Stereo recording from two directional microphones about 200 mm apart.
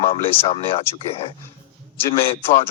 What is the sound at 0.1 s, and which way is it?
A man's voice, 25° left (ahead or behind).